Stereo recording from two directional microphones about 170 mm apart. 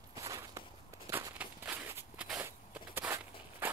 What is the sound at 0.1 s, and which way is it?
Walk, 20° right (ahead or behind).